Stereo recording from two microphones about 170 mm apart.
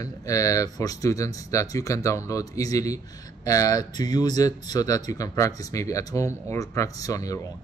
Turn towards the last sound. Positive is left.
turn(degrees=20)  # may be behind; listen again after turning